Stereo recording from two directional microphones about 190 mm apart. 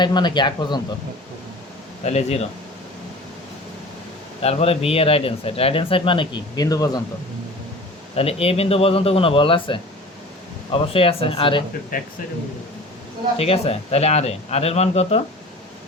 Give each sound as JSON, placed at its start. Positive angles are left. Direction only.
{"t": 0.0, "sound": "a man's voice", "side_deg": 25}
{"t": 2.0, "sound": "speech", "side_deg": 35}
{"t": 4.4, "sound": "a man's voice", "side_deg": 30}
{"t": 8.1, "sound": "a man's voice", "side_deg": 30}
{"t": 11.9, "sound": "speech", "side_deg": 45}
{"t": 13.3, "sound": "speech", "side_deg": 30}